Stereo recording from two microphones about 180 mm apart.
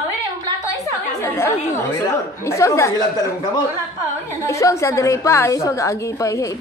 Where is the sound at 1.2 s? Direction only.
15° left (ahead or behind).